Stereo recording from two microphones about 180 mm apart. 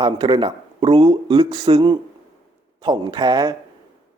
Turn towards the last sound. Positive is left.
turn(degrees=-20)  # may be behind; listen again after turning